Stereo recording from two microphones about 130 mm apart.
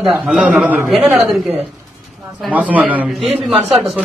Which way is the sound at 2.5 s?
10° right (ahead or behind).